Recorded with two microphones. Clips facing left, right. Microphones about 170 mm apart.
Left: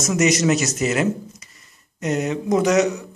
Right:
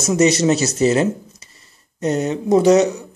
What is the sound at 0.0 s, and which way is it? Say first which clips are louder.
Speech: right 3 dB; 30° right (ahead or behind).